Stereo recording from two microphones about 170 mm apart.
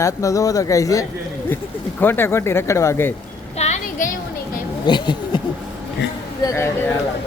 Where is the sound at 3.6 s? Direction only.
40° left (ahead or behind).